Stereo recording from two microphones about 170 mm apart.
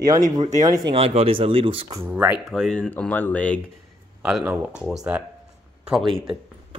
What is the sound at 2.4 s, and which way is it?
Speech, centre (ahead or behind).